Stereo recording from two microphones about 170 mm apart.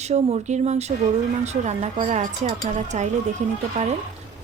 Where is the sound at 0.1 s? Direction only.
40° right (ahead or behind).